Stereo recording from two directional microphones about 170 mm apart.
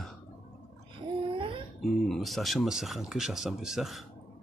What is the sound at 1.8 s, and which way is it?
Speech, centre (ahead or behind).